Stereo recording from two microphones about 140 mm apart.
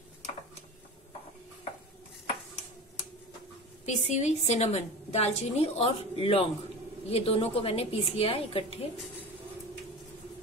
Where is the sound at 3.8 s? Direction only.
55° left (ahead or behind).